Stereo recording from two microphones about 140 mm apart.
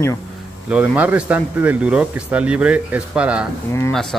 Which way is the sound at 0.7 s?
10° right (ahead or behind).